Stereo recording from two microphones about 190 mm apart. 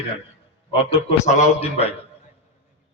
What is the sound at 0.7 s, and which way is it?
A man's voice, 30° left (ahead or behind).